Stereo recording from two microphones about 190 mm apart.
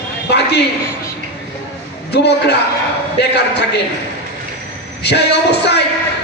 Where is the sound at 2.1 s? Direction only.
60° left (ahead or behind).